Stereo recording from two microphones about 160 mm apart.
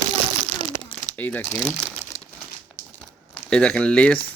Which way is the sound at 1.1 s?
10° left (ahead or behind).